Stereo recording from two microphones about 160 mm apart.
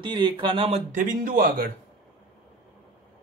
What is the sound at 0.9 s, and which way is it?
Speech, 60° right (ahead or behind).